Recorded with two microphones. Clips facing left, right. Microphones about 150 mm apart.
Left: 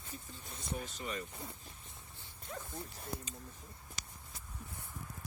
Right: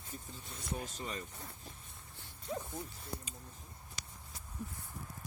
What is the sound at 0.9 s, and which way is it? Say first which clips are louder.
Speech: left 1 dB; 40° right (ahead or behind).